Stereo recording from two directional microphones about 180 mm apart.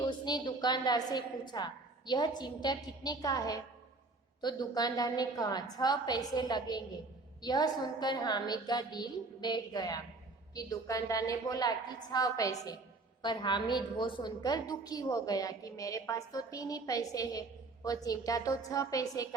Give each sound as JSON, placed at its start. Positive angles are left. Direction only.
{"t": 0.0, "sound": "a woman's voice", "side_deg": 25}